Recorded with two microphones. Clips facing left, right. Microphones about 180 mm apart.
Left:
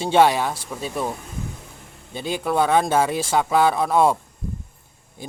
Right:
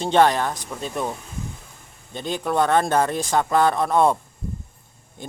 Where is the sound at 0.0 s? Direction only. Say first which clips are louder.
Left 1 dB; 10° left (ahead or behind).